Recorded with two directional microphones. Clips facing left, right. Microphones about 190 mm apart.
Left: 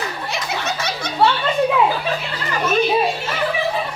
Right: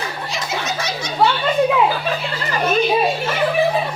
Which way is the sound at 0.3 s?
60° left (ahead or behind).